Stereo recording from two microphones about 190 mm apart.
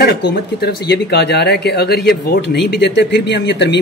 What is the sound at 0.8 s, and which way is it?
Speech, 60° left (ahead or behind).